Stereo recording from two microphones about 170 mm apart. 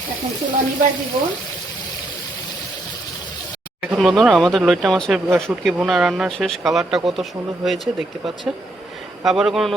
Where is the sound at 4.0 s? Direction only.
Centre (ahead or behind).